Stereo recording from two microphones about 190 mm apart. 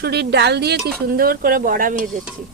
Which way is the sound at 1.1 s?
50° right (ahead or behind).